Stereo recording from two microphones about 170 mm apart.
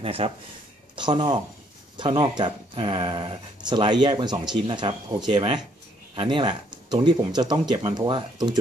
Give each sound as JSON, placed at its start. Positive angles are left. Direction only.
{"t": 0.0, "sound": "speech", "side_deg": -35}